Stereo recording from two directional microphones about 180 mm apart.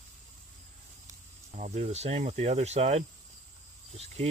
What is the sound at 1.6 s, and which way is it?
Speech, 40° right (ahead or behind).